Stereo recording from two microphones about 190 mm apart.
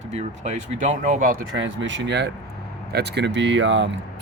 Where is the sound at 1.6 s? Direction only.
75° right (ahead or behind).